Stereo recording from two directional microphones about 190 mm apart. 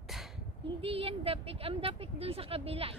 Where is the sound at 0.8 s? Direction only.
30° right (ahead or behind).